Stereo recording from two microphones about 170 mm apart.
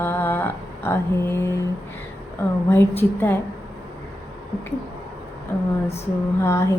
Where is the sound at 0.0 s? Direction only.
15° left (ahead or behind).